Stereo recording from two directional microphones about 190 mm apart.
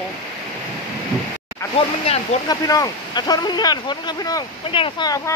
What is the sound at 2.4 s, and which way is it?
Speech, 20° left (ahead or behind).